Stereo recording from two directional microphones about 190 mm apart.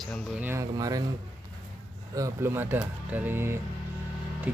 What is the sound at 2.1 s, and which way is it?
A man's voice, 15° right (ahead or behind).